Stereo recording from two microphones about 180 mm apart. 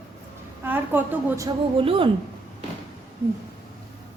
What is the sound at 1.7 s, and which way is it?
Speech, 30° right (ahead or behind).